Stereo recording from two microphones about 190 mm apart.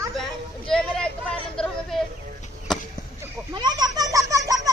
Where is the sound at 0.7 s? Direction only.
5° left (ahead or behind).